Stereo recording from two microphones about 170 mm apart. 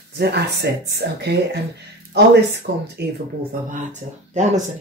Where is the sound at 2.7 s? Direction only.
70° right (ahead or behind).